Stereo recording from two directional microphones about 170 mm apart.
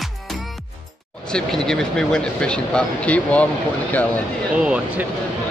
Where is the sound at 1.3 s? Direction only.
5° left (ahead or behind).